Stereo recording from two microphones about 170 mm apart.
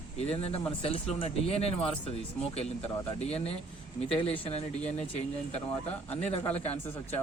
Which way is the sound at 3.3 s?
35° left (ahead or behind).